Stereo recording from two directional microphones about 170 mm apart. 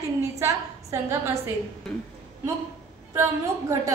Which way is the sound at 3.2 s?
15° right (ahead or behind).